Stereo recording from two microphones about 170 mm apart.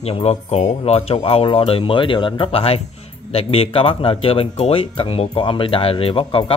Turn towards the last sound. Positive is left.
turn(degrees=30)  # may be behind; listen again after turning